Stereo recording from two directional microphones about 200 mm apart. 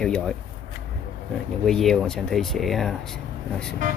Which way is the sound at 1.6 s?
Centre (ahead or behind).